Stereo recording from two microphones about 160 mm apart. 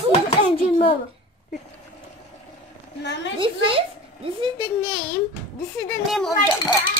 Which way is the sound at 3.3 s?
30° right (ahead or behind).